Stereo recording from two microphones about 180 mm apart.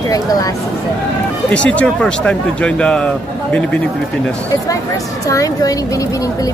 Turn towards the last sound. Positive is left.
turn(degrees=20)  # may be behind; listen again after turning